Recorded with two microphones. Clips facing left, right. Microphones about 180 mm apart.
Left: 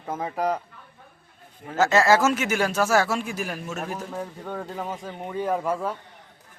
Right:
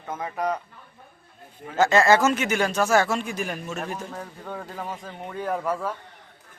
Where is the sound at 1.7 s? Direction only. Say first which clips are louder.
Right 1 dB; 5° left (ahead or behind).